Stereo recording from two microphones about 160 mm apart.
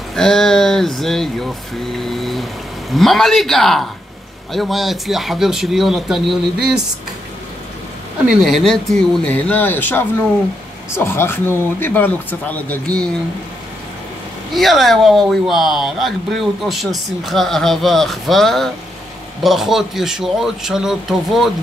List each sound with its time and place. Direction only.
0.1 s speech: 5° left (ahead or behind)
8.5 s speech: centre (ahead or behind)
14.5 s speech: centre (ahead or behind)